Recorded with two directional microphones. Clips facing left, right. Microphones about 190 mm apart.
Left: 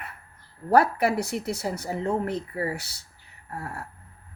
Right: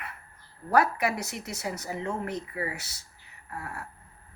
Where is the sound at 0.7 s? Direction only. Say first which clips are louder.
Left 4 dB; 30° left (ahead or behind).